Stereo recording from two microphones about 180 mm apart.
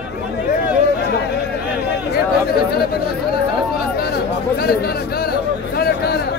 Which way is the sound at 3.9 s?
60° left (ahead or behind).